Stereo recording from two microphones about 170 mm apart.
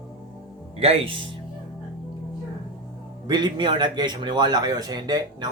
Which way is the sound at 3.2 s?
25° right (ahead or behind).